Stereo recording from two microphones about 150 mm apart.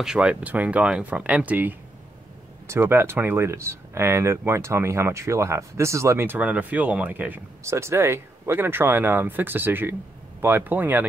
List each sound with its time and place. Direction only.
0.0 s speech: 5° right (ahead or behind)